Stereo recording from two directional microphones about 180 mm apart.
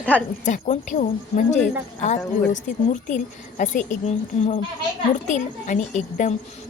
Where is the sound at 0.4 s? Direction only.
45° left (ahead or behind).